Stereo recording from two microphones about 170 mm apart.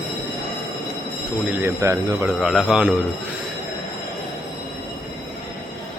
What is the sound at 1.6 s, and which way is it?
Speech, 15° right (ahead or behind).